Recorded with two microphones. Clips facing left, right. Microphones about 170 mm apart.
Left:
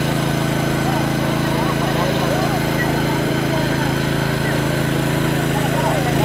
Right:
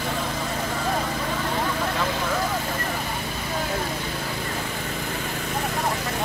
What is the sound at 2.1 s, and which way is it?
Vehicle, 90° left.